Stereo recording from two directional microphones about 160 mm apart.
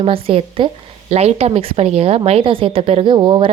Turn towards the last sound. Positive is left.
turn(degrees=-30)  # may be behind; listen again after turning